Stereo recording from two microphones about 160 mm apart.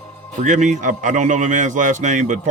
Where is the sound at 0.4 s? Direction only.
50° right (ahead or behind).